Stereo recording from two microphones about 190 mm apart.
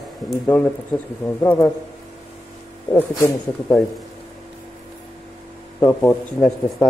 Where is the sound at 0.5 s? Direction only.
10° left (ahead or behind).